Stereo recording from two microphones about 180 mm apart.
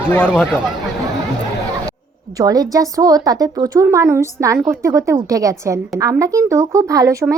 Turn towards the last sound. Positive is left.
turn(degrees=-15)  # may be behind; listen again after turning